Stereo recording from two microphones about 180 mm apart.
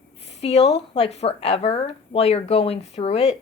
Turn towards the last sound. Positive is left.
turn(degrees=35)  # may be behind; listen again after turning